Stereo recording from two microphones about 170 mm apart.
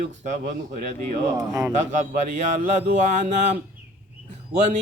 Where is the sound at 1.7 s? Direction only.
45° right (ahead or behind).